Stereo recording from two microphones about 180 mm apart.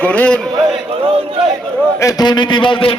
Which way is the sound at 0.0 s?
10° left (ahead or behind).